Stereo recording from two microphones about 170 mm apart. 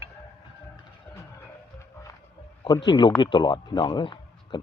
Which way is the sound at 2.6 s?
25° left (ahead or behind).